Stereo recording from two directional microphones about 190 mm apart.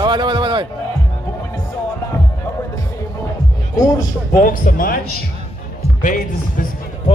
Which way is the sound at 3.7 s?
20° left (ahead or behind).